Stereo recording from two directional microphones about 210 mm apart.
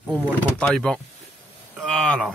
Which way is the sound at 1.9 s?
5° left (ahead or behind).